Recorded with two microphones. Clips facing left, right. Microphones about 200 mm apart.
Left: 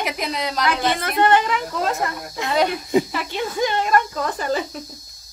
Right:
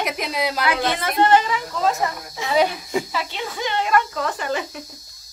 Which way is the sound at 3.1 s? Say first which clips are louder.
Left 3 dB; 50° left (ahead or behind).